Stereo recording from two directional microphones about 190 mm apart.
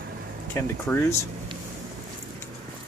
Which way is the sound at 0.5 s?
10° left (ahead or behind).